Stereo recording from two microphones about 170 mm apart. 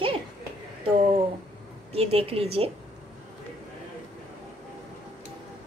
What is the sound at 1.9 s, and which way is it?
Speech, 35° right (ahead or behind).